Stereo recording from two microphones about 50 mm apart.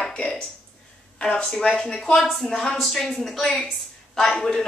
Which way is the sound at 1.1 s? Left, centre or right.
Centre.